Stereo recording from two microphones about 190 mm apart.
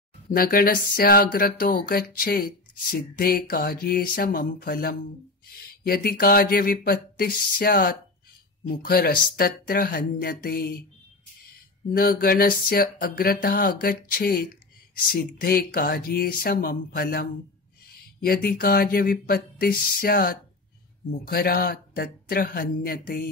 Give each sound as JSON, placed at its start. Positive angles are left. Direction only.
{"t": 0.3, "sound": "speech", "side_deg": 50}
{"t": 11.9, "sound": "speech", "side_deg": 50}